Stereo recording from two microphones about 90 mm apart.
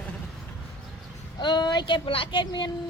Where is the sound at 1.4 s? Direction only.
55° left (ahead or behind).